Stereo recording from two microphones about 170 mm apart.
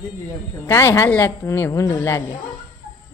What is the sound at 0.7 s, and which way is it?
A woman's voice, 15° left (ahead or behind).